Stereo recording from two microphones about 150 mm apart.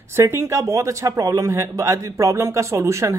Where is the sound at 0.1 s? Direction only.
15° right (ahead or behind).